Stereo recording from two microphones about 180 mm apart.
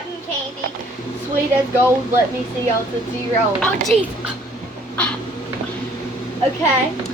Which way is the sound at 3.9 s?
35° right (ahead or behind).